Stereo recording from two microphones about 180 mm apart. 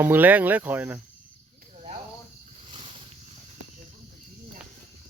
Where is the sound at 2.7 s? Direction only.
30° right (ahead or behind).